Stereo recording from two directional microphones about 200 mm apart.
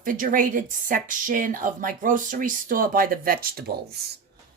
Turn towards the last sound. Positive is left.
turn(degrees=-50)  # may be behind; listen again after turning